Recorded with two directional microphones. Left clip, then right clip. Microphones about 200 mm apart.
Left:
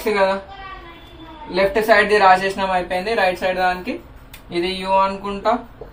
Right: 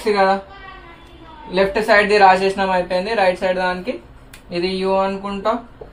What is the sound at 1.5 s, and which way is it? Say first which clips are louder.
A woman's voice: even; 30° right (ahead or behind).